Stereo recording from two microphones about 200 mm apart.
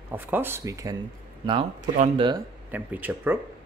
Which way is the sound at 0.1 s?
10° right (ahead or behind).